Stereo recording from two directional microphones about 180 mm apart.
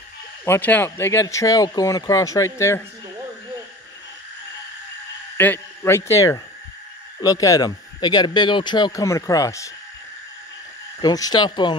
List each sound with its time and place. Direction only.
0.5 s speech: 10° left (ahead or behind)
5.4 s speech: 10° left (ahead or behind)
11.0 s speech: 20° left (ahead or behind)